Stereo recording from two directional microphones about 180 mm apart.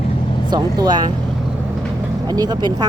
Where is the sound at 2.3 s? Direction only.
20° right (ahead or behind).